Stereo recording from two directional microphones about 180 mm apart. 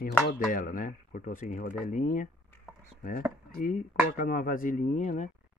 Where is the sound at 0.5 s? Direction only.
50° left (ahead or behind).